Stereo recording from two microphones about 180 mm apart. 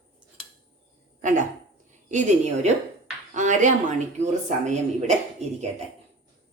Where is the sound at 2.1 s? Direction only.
40° right (ahead or behind).